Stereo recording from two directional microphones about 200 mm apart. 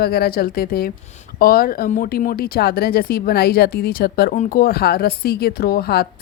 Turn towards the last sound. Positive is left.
turn(degrees=50)  # may be behind; listen again after turning